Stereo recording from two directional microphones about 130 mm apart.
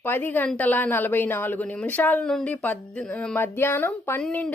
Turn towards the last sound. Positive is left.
turn(degrees=10)  # may be behind; listen again after turning